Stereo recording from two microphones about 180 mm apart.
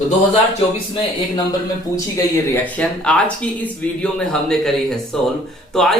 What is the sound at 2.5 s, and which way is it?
Speech, 10° left (ahead or behind).